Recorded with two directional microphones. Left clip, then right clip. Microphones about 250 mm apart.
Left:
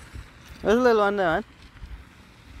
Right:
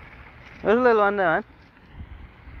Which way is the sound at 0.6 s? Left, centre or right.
Centre.